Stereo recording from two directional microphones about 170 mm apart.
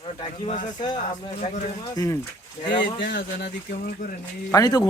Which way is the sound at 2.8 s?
80° left.